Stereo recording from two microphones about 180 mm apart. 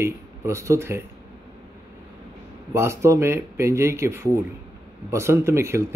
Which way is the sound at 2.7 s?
15° right (ahead or behind).